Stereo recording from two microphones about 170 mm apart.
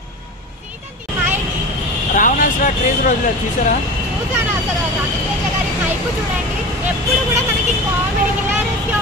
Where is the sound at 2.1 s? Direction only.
50° left (ahead or behind).